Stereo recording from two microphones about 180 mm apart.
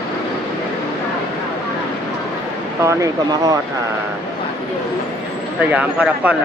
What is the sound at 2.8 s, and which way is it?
Speech, 15° right (ahead or behind).